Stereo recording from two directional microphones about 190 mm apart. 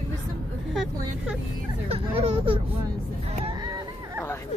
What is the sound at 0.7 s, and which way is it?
Speech, 5° right (ahead or behind).